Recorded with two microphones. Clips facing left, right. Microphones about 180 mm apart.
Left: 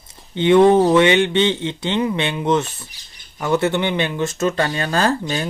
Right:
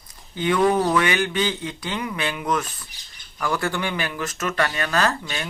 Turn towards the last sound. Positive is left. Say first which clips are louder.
# left 4 dB
turn(degrees=30)  # may be behind; listen again after turning